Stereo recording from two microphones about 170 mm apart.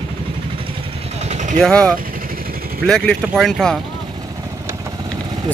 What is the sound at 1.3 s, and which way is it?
Vehicle, 45° right (ahead or behind).